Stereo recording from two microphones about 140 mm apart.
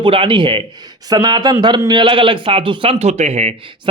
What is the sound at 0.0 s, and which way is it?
Speech, 40° right (ahead or behind).